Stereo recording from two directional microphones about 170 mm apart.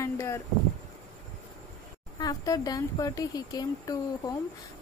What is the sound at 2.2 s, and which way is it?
Speech, 20° left (ahead or behind).